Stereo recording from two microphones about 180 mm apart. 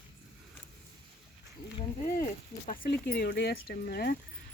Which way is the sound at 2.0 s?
50° left (ahead or behind).